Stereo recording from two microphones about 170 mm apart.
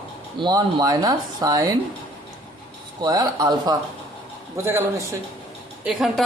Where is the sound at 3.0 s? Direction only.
20° right (ahead or behind).